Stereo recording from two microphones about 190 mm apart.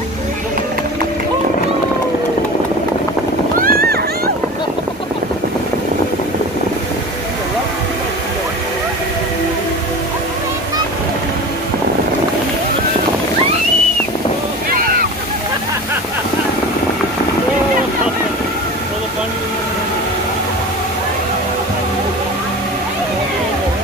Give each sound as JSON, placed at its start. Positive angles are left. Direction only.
{"t": 3.5, "sound": "boat", "side_deg": -50}